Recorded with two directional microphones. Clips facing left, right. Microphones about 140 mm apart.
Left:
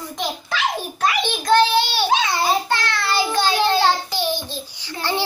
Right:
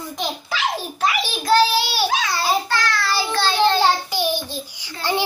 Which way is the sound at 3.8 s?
10° right (ahead or behind).